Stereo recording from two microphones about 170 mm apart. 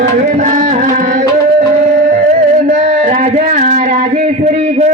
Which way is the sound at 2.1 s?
45° right (ahead or behind).